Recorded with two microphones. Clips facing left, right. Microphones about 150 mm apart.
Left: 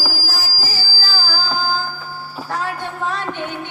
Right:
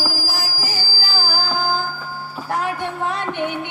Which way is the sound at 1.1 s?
20° right (ahead or behind).